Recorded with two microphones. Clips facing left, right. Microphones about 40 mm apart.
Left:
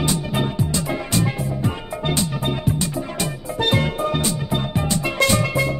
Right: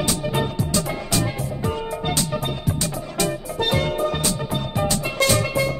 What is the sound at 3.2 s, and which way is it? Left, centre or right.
Music, centre.